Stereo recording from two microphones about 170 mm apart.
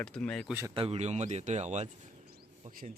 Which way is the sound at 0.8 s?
35° right (ahead or behind).